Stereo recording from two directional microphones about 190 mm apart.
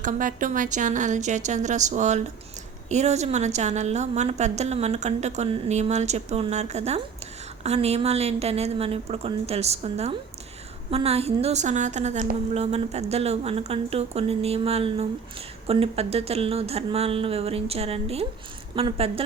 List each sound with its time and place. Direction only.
0.0 s a woman's voice: 45° right (ahead or behind)